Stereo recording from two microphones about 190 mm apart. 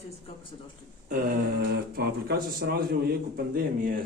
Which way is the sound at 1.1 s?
45° right (ahead or behind).